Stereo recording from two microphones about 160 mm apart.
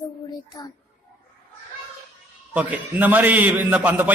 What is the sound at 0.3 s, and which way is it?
Speech, 25° left (ahead or behind).